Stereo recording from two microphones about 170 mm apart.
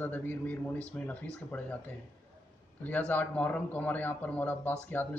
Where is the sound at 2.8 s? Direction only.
10° left (ahead or behind).